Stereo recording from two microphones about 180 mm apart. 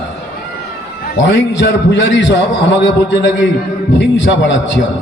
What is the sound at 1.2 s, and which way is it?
A man's voice, 75° left (ahead or behind).